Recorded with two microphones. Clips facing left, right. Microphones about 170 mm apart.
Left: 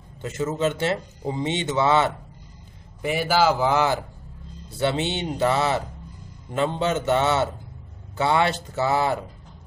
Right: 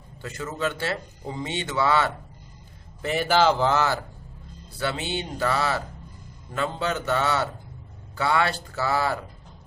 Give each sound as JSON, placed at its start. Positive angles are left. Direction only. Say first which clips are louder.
{"t": 0.2, "sound": "a man's voice", "louder": "left 5 dB", "side_deg": 20}
{"t": 3.0, "sound": "a man's voice", "louder": "even", "side_deg": 10}